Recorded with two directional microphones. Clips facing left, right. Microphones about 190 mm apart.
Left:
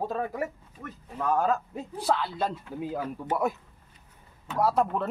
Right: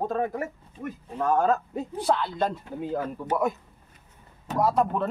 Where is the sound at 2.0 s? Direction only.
5° left (ahead or behind).